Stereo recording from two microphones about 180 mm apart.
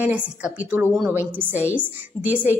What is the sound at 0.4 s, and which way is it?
A woman's voice, 10° right (ahead or behind).